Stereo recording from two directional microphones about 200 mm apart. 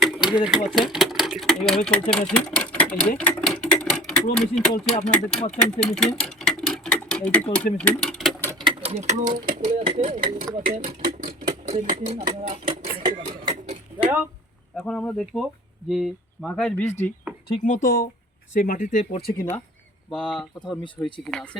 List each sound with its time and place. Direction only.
0.0 s speech: 5° right (ahead or behind)
3.2 s a sound: 5° left (ahead or behind)
4.8 s speech: centre (ahead or behind)
6.2 s a sound: 5° left (ahead or behind)
7.5 s speech: 5° left (ahead or behind)
8.4 s speech: 20° right (ahead or behind); by 10.2 s 40° right (ahead or behind)
11.7 s speech: 35° right (ahead or behind)
13.0 s a sound: 25° right (ahead or behind)
14.8 s speech: 5° left (ahead or behind)
17.8 s speech: 45° left (ahead or behind)
20.1 s speech: 5° left (ahead or behind)